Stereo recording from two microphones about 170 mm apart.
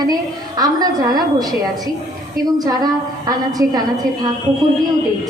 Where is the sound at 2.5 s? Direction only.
20° right (ahead or behind).